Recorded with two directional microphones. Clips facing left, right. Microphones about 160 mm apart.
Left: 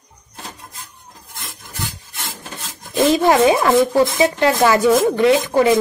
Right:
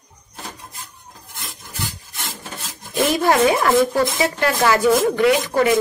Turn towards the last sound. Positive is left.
turn(degrees=25)  # may be behind; listen again after turning